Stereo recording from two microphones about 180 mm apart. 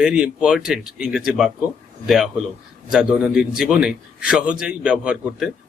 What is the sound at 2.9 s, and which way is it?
A man's voice, 5° right (ahead or behind).